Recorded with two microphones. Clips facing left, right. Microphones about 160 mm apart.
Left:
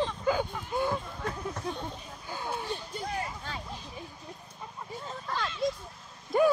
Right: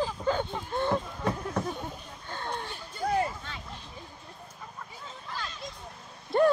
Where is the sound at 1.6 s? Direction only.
10° right (ahead or behind).